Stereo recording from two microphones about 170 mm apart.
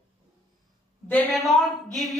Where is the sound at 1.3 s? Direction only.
Centre (ahead or behind).